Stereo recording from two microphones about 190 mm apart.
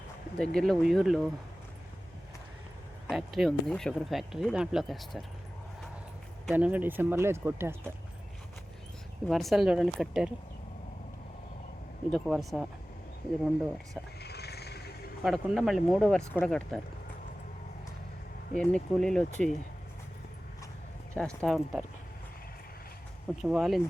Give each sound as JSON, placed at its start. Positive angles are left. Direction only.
{"t": 0.5, "sound": "speech", "side_deg": 0}
{"t": 3.1, "sound": "speech", "side_deg": 0}
{"t": 6.4, "sound": "speech", "side_deg": -10}
{"t": 9.2, "sound": "speech", "side_deg": 0}
{"t": 12.1, "sound": "speech", "side_deg": 0}
{"t": 14.2, "sound": "a sound", "side_deg": 60}
{"t": 15.2, "sound": "speech", "side_deg": 0}
{"t": 18.6, "sound": "speech", "side_deg": 5}
{"t": 21.2, "sound": "speech", "side_deg": 0}
{"t": 23.4, "sound": "speech", "side_deg": 0}